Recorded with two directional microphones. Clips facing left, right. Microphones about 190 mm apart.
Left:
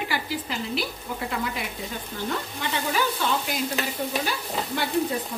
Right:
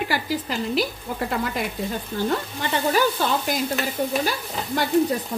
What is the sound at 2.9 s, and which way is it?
Speech, 40° right (ahead or behind).